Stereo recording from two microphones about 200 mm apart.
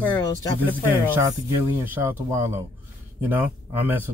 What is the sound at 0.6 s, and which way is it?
Speech, 10° right (ahead or behind).